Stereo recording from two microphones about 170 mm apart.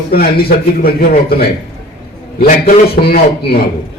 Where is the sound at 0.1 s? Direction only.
65° left (ahead or behind).